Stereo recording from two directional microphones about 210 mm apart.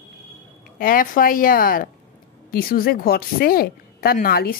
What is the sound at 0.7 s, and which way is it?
A woman's voice, 40° left (ahead or behind).